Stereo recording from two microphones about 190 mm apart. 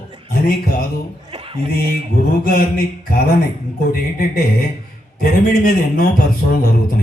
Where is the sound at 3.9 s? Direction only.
50° left (ahead or behind).